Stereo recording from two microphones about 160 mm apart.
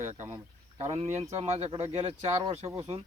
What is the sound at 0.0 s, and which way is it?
Speech, 45° right (ahead or behind).